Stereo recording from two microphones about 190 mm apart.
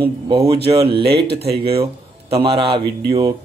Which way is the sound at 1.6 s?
30° right (ahead or behind).